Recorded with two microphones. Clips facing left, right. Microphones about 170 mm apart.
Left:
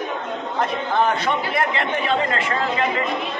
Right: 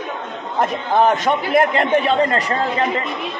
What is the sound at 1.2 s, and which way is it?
Speech, 45° right (ahead or behind).